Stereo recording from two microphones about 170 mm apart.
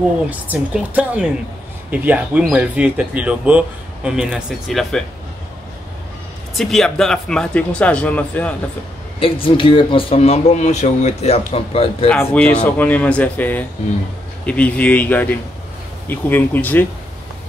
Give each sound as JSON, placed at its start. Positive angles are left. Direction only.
{"t": 0.3, "sound": "speech", "side_deg": -10}
{"t": 6.5, "sound": "speech", "side_deg": 0}
{"t": 9.2, "sound": "speech", "side_deg": 30}
{"t": 12.1, "sound": "speech", "side_deg": 10}